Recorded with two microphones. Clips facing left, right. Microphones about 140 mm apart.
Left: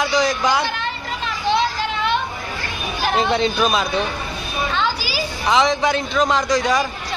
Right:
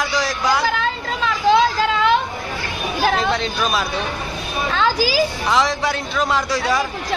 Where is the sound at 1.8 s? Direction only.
90° right.